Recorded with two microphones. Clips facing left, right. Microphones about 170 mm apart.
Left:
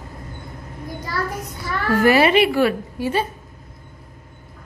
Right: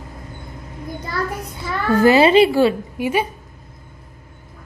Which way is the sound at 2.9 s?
15° right (ahead or behind).